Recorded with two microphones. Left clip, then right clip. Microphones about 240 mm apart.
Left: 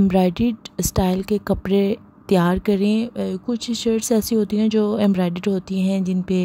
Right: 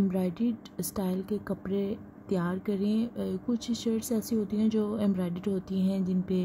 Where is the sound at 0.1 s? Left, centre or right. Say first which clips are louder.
Left 12 dB; left.